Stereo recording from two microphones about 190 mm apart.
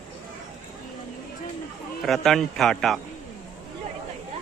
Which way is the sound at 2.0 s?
Centre (ahead or behind).